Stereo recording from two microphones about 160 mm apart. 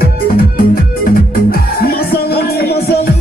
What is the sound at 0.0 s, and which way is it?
Music, 70° left (ahead or behind).